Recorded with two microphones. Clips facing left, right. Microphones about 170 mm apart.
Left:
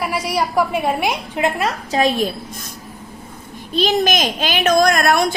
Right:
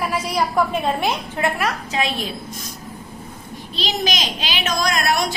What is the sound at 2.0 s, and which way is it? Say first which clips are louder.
Speech: left 8 dB; 45° left (ahead or behind).